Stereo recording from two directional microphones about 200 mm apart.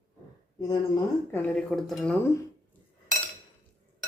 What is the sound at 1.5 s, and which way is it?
Speech, 5° left (ahead or behind).